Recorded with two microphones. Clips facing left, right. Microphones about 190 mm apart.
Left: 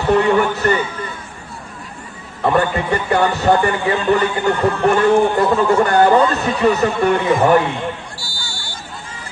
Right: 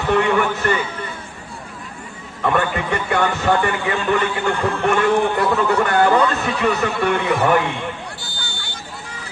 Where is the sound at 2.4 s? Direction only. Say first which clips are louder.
Left 3 dB; 35° left (ahead or behind).